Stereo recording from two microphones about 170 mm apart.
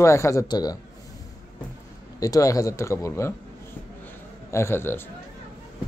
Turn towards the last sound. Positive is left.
turn(degrees=15)  # may be behind; listen again after turning